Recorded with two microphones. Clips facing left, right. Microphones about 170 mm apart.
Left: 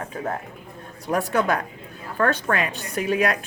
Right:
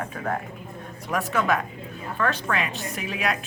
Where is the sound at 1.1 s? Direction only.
35° left (ahead or behind).